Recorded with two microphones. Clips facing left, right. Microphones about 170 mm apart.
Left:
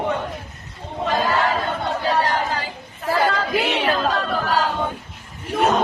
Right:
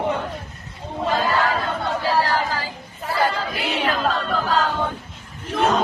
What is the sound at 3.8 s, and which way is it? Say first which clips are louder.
Chatter: left 1 dB; 10° left (ahead or behind).